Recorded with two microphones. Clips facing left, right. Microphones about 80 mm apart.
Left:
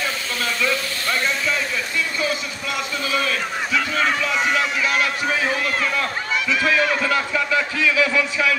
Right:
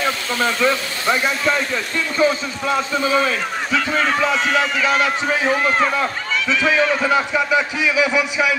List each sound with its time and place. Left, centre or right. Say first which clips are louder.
0.4 s a man's voice: right 5 dB; right
4.6 s a man's voice: right 3 dB; right
6.6 s a man's voice: right 3 dB; right